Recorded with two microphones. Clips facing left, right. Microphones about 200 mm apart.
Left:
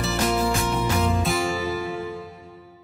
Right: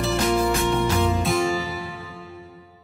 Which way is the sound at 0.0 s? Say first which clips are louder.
Right 2 dB; centre (ahead or behind).